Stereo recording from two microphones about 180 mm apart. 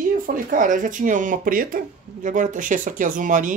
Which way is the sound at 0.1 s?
50° right (ahead or behind).